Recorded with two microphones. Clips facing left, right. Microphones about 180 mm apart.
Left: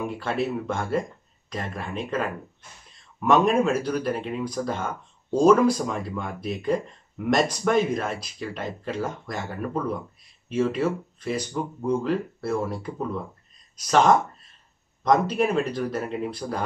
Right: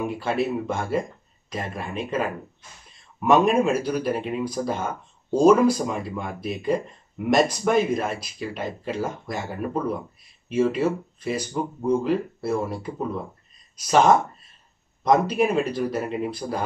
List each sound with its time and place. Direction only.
0.2 s speech: 5° right (ahead or behind)